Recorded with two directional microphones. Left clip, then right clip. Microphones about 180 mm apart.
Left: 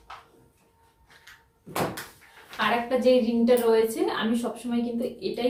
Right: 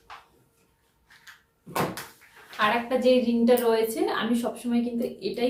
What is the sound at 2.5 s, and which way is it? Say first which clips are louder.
Speech: right 1 dB; 25° right (ahead or behind).